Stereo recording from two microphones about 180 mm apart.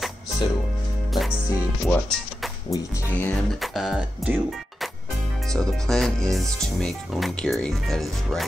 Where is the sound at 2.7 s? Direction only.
15° left (ahead or behind).